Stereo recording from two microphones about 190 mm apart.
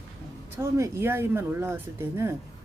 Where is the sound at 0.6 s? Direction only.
15° right (ahead or behind).